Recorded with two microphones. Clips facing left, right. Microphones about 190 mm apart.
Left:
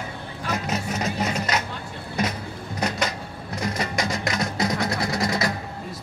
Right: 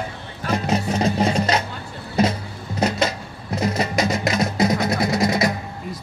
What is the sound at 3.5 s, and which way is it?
Music, 25° right (ahead or behind).